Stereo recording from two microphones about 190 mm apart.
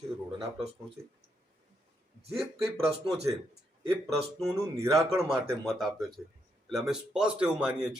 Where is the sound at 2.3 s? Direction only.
Centre (ahead or behind).